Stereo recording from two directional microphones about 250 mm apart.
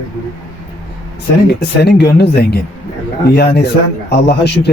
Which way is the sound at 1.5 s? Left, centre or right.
Left.